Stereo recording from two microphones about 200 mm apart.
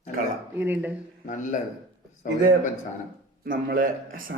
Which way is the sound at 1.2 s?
40° left (ahead or behind).